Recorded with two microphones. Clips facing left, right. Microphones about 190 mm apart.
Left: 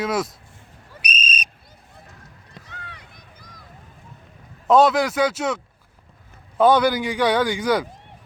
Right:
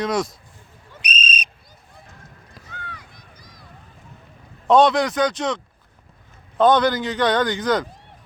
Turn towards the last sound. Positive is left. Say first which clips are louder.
# even
turn(degrees=10)  # may be behind; listen again after turning